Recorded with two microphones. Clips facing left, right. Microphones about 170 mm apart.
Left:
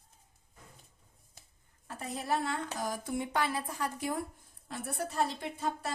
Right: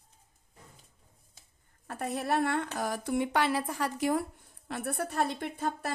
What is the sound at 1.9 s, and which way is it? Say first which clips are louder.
A woman's voice: right 3 dB; 60° right (ahead or behind).